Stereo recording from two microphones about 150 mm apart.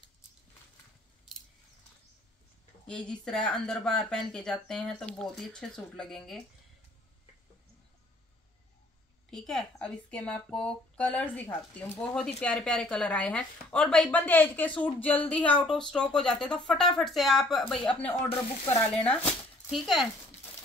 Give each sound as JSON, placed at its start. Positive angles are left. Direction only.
{"t": 2.9, "sound": "speech", "side_deg": 5}
{"t": 9.3, "sound": "speech", "side_deg": 5}